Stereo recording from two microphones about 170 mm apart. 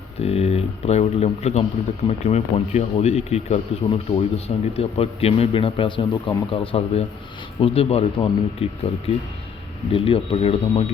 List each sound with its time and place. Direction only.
0.2 s speech: 35° left (ahead or behind)